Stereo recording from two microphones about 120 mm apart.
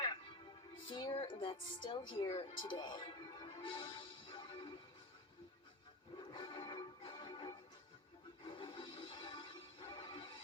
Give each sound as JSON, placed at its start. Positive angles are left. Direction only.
{"t": 0.0, "sound": "music", "side_deg": 40}
{"t": 6.1, "sound": "music", "side_deg": 40}